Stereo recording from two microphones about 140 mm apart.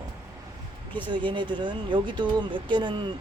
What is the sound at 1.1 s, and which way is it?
Speech, 35° right (ahead or behind).